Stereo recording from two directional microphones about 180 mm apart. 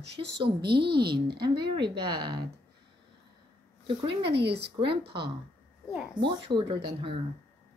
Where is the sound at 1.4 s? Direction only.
25° right (ahead or behind).